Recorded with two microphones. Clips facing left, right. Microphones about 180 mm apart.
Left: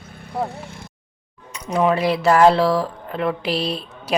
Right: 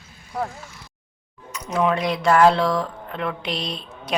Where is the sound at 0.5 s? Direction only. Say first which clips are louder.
Left 6 dB; 60° left (ahead or behind).